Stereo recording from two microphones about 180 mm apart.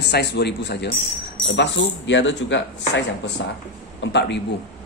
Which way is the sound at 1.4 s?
90° left.